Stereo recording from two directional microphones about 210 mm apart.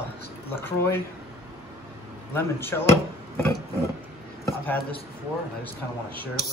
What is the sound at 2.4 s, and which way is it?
Speech, 10° left (ahead or behind).